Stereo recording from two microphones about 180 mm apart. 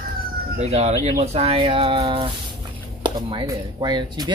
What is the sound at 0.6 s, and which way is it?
Speech, 35° right (ahead or behind).